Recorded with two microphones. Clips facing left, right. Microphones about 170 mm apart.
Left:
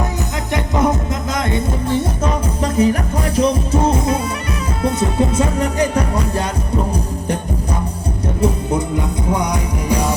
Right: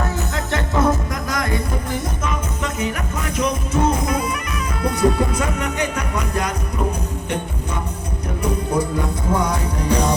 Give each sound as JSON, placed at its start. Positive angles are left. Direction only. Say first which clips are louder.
{"t": 0.5, "sound": "music", "louder": "left 2 dB", "side_deg": 20}
{"t": 8.4, "sound": "music", "louder": "left 2 dB", "side_deg": 20}